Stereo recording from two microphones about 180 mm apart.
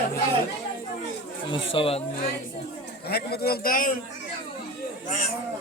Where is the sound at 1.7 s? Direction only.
30° left (ahead or behind).